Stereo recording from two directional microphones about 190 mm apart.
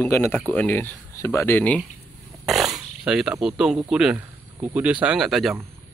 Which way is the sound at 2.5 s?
Centre (ahead or behind).